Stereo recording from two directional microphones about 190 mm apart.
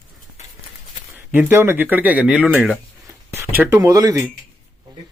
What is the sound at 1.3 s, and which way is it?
Speech, 15° right (ahead or behind).